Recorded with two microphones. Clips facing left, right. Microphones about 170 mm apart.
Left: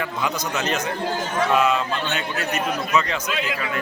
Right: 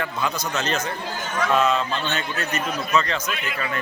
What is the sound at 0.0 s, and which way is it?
A man's voice, 10° left (ahead or behind).